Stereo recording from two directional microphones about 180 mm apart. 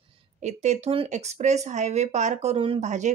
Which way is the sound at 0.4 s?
40° right (ahead or behind).